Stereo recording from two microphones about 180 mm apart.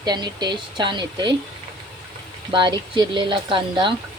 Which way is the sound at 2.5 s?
25° right (ahead or behind).